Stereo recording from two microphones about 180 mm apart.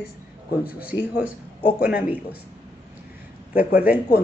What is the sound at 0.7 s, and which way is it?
Speech, 5° right (ahead or behind).